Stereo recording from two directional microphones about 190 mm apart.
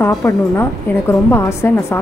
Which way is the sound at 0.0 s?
10° left (ahead or behind).